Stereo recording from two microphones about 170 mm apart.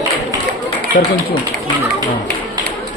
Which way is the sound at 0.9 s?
50° left (ahead or behind).